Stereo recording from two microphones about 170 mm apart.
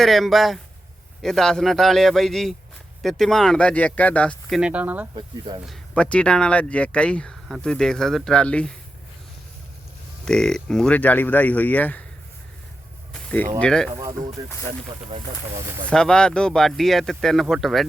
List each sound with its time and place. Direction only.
0.0 s speech: centre (ahead or behind)
5.6 s speech: 5° left (ahead or behind)
10.2 s speech: 5° left (ahead or behind)
13.1 s a sound: 5° left (ahead or behind)
13.6 s speech: 5° left (ahead or behind)
14.4 s speech: 20° right (ahead or behind)
15.9 s speech: 5° left (ahead or behind)